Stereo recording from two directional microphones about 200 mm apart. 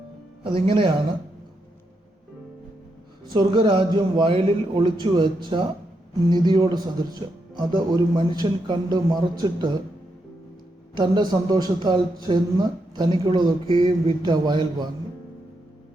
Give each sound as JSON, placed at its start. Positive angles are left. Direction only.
{"t": 0.4, "sound": "a man's voice", "side_deg": -25}
{"t": 3.3, "sound": "a man's voice", "side_deg": -25}
{"t": 10.9, "sound": "a man's voice", "side_deg": -20}